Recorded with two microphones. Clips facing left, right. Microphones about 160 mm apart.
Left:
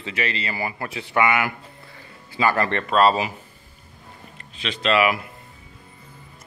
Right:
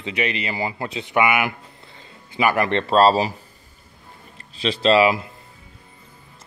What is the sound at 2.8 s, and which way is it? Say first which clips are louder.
Speech: right 3 dB; 35° right (ahead or behind).